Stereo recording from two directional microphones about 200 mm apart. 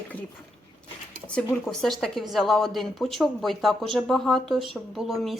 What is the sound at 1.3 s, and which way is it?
Speech, 5° left (ahead or behind).